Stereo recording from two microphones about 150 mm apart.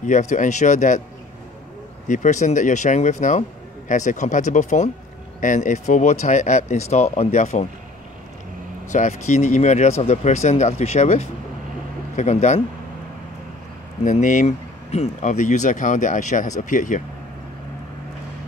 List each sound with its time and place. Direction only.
0.0 s speech: 55° left (ahead or behind)
2.0 s speech: 55° left (ahead or behind)
8.9 s speech: 55° left (ahead or behind)
14.0 s speech: 55° left (ahead or behind)